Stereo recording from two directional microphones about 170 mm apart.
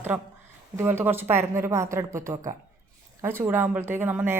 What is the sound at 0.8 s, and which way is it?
Speech, 15° right (ahead or behind).